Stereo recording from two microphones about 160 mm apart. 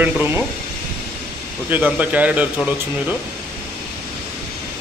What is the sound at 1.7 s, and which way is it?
Speech, 10° right (ahead or behind).